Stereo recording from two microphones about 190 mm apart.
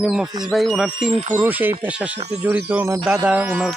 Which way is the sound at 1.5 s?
10° right (ahead or behind).